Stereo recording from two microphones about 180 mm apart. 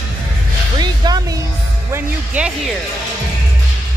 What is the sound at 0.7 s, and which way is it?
Music, 20° right (ahead or behind).